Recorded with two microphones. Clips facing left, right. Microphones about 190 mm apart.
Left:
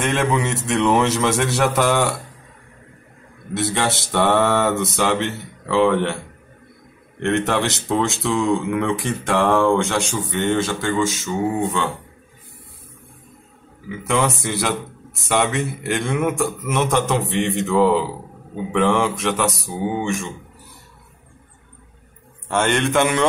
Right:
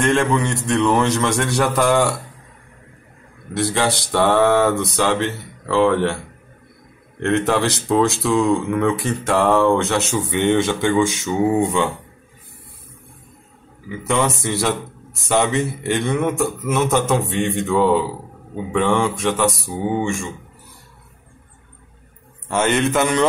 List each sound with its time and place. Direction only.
0.0 s a man's voice: 5° left (ahead or behind)
3.5 s a man's voice: centre (ahead or behind)
7.2 s a man's voice: centre (ahead or behind)
10.4 s speech: 15° right (ahead or behind)
14.0 s a man's voice: centre (ahead or behind)
22.5 s a man's voice: 5° right (ahead or behind)